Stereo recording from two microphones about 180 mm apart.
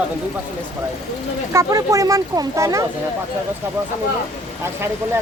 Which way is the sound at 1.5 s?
15° right (ahead or behind).